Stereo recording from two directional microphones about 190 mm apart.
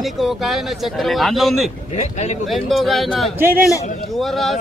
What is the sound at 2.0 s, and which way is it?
Speech, 35° left (ahead or behind).